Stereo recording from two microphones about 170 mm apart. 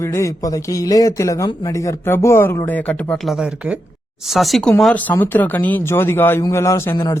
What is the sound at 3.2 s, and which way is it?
Speech, 5° right (ahead or behind).